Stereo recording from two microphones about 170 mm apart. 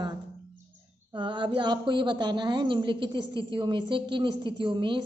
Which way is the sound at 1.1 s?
30° right (ahead or behind).